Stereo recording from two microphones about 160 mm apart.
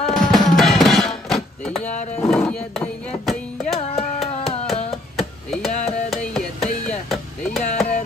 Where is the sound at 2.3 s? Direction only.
5° left (ahead or behind).